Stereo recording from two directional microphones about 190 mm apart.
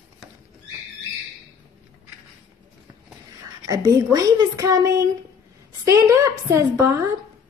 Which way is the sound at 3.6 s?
15° right (ahead or behind).